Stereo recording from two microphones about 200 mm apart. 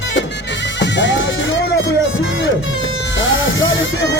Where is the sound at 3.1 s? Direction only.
70° left (ahead or behind).